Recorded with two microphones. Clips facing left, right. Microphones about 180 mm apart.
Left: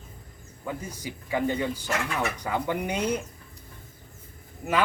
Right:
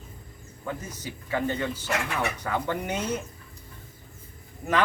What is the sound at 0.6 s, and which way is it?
Speech, 10° left (ahead or behind).